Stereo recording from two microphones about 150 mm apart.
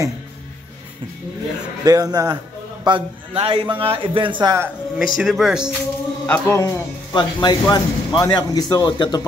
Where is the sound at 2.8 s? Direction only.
35° right (ahead or behind).